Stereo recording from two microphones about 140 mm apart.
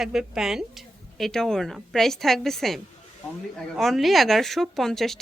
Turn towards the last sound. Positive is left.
turn(degrees=5)  # may be behind; listen again after turning